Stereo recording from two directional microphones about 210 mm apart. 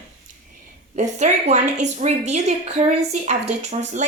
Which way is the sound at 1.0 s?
35° right (ahead or behind).